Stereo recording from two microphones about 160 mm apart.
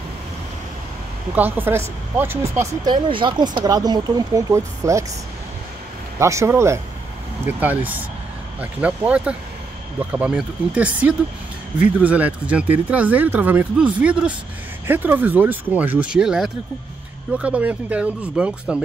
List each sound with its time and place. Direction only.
1.3 s speech: 10° right (ahead or behind)
6.1 s speech: 15° right (ahead or behind)